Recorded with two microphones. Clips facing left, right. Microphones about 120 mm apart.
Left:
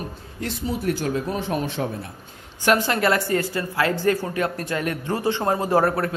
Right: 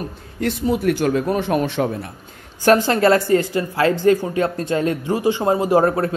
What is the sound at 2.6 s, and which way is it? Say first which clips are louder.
A man's voice: right 5 dB; 35° right (ahead or behind).